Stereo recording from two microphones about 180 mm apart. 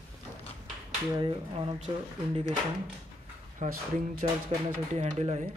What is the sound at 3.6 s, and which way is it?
Speech, 40° right (ahead or behind).